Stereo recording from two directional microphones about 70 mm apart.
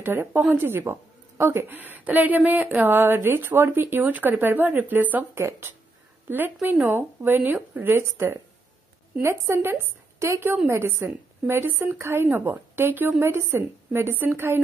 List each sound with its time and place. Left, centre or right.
0.0 s a woman's voice: right